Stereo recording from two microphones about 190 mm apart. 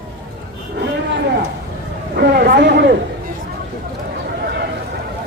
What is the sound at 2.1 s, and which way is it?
Speech, 55° right (ahead or behind).